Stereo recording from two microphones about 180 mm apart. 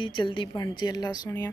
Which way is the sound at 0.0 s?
25° left (ahead or behind).